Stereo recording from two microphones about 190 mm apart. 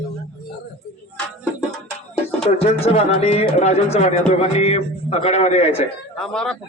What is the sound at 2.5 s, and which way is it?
Speech, 35° left (ahead or behind).